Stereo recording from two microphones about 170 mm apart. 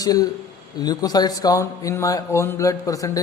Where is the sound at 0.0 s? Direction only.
20° left (ahead or behind).